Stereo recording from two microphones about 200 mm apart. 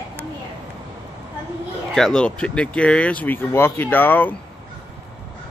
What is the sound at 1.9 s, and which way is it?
Speech, 5° left (ahead or behind).